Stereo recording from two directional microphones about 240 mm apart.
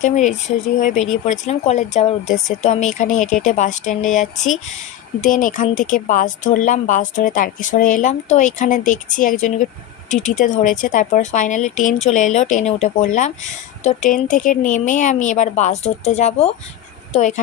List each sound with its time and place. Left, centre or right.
0.0 s speech: left